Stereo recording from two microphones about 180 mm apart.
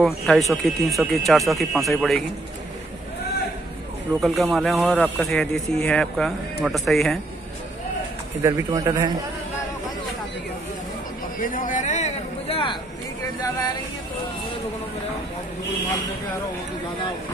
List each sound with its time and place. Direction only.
0.0 s speech: centre (ahead or behind)
4.2 s speech: centre (ahead or behind)
8.4 s a man's voice: 20° right (ahead or behind)
11.3 s a sound: 50° left (ahead or behind); by 12.7 s 30° left (ahead or behind)